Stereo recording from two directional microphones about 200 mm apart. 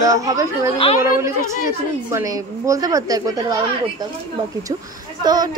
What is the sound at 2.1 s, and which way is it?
A woman's voice, 15° right (ahead or behind).